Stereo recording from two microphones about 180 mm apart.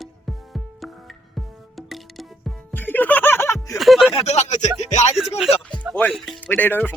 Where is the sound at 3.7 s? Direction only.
Centre (ahead or behind).